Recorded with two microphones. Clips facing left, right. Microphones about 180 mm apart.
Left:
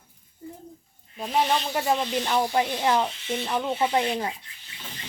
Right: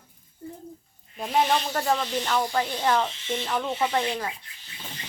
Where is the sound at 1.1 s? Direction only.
5° right (ahead or behind).